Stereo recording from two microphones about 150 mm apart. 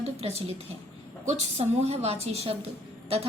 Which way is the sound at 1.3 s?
45° right (ahead or behind).